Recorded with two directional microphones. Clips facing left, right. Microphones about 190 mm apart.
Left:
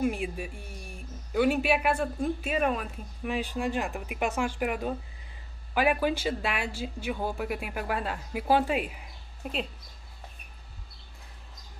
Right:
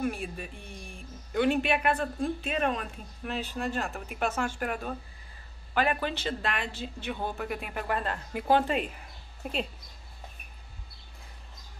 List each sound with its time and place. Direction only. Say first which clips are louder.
0.0 s speech: left 3 dB; 15° left (ahead or behind)